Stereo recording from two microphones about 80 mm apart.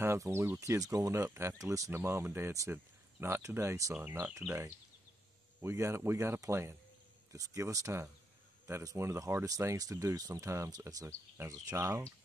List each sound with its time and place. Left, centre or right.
0.0 s speech: right
1.9 s speech: right
5.6 s speech: right